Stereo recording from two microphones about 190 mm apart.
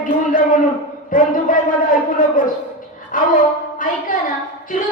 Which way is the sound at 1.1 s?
45° left (ahead or behind).